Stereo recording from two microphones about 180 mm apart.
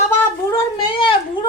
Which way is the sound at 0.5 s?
25° left (ahead or behind).